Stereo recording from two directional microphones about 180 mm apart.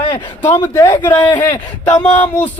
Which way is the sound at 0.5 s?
20° left (ahead or behind).